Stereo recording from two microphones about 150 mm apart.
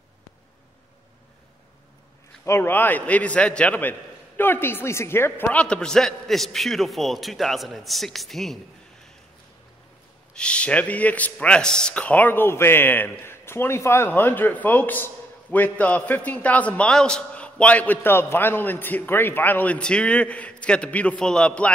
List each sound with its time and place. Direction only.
2.4 s a man's voice: 15° left (ahead or behind); by 8.5 s centre (ahead or behind)
10.3 s a man's voice: 5° left (ahead or behind)